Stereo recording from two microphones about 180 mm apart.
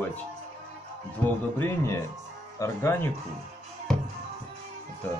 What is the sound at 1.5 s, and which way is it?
A man's voice, 15° left (ahead or behind).